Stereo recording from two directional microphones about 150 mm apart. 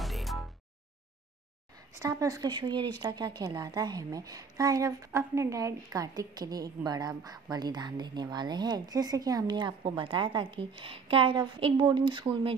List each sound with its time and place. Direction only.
0.0 s music: centre (ahead or behind)
2.0 s a woman's voice: 25° right (ahead or behind)